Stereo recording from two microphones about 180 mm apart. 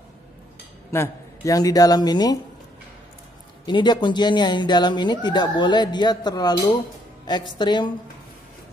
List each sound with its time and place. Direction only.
0.9 s speech: 15° left (ahead or behind)
3.6 s speech: 25° left (ahead or behind)